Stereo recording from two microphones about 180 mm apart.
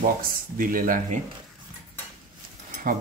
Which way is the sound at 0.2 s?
50° right (ahead or behind).